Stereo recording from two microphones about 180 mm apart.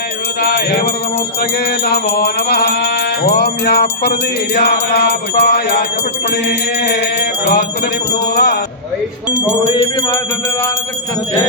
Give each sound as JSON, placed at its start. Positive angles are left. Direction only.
{"t": 0.4, "sound": "music", "side_deg": 60}
{"t": 9.7, "sound": "jingle bell", "side_deg": 30}